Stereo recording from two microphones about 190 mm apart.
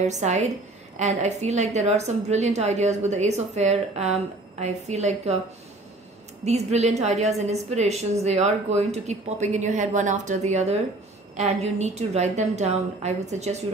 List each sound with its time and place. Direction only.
0.0 s a woman's voice: 35° right (ahead or behind)
6.4 s a woman's voice: 35° right (ahead or behind)